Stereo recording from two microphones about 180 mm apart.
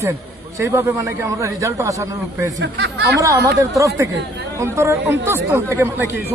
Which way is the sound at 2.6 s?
65° right (ahead or behind).